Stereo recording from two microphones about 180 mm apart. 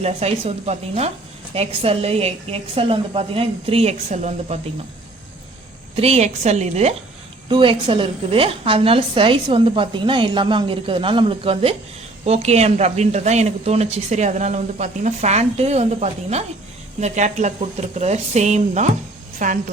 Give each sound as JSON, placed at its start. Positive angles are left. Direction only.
{"t": 0.0, "sound": "speech", "side_deg": -35}
{"t": 6.0, "sound": "a woman's voice", "side_deg": -35}